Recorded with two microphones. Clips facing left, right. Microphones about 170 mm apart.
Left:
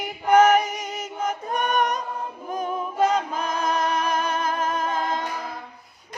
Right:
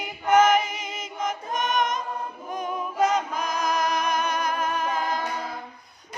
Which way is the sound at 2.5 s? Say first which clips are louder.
Left 3 dB; 30° left (ahead or behind).